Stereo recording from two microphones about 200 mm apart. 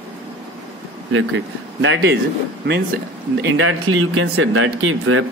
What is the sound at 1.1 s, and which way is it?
Speech, 70° right (ahead or behind).